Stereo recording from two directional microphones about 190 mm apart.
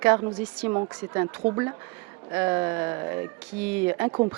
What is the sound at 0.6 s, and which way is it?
Speech, 30° right (ahead or behind).